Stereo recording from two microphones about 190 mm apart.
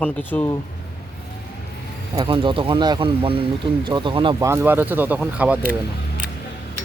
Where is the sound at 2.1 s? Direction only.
25° right (ahead or behind).